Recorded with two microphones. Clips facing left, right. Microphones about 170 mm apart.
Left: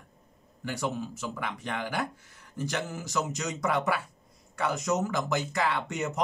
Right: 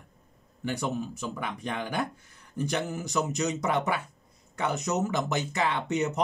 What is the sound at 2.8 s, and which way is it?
Speech, 15° right (ahead or behind).